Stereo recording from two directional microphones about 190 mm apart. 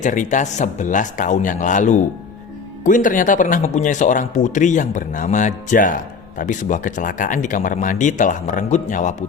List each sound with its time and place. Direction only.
0.0 s speech: 40° left (ahead or behind)